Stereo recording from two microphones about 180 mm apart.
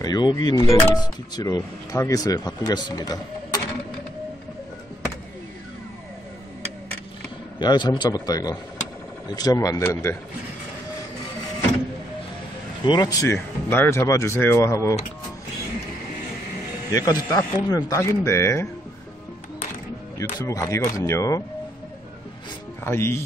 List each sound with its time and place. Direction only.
0.0 s speech: 25° left (ahead or behind)
7.5 s speech: 25° left (ahead or behind)
12.8 s speech: 25° left (ahead or behind)
16.9 s speech: 20° left (ahead or behind)
20.3 s speech: 20° left (ahead or behind)
22.8 s speech: 15° left (ahead or behind)